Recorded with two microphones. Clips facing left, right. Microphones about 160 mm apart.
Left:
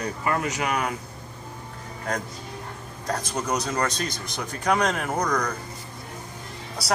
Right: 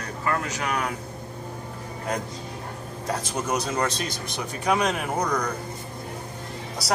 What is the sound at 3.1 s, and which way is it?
Speech, 5° right (ahead or behind).